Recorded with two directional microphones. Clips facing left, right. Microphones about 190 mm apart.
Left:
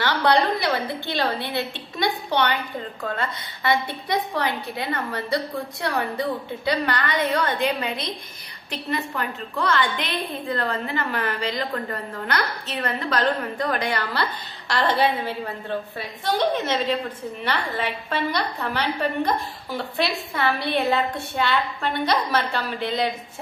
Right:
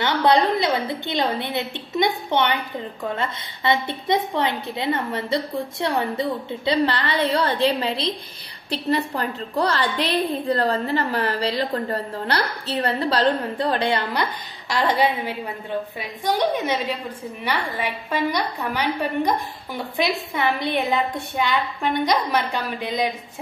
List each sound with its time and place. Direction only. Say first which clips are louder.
0.0 s a woman's voice: right 2 dB; 20° right (ahead or behind)